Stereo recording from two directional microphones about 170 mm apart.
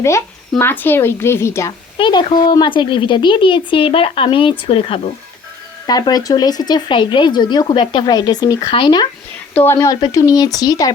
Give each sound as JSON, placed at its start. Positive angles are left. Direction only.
{"t": 0.6, "sound": "speech", "side_deg": 10}
{"t": 2.0, "sound": "a woman's voice", "side_deg": 25}
{"t": 9.6, "sound": "a woman's voice", "side_deg": 15}